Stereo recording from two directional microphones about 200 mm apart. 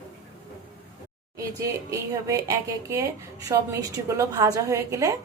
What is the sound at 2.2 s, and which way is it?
A woman's voice, 15° right (ahead or behind).